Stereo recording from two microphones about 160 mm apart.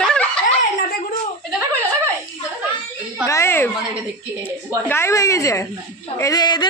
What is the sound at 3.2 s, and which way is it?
A woman's voice, 15° left (ahead or behind).